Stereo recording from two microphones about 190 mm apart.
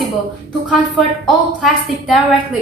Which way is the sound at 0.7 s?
Centre (ahead or behind).